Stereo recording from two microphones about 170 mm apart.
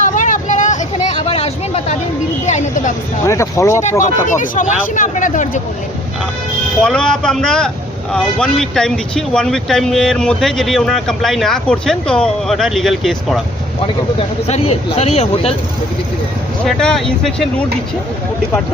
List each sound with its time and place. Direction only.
0.0 s vehicle: 50° left (ahead or behind)
1.3 s a sound: 35° left (ahead or behind)
3.2 s speech: 15° left (ahead or behind)
4.3 s speech: 50° left (ahead or behind)
6.8 s speech: 5° left (ahead or behind)
13.8 s speech: 35° left (ahead or behind)
16.6 s speech: 5° left (ahead or behind)